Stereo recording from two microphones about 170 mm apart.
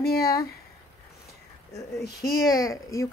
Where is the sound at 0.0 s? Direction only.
65° left (ahead or behind).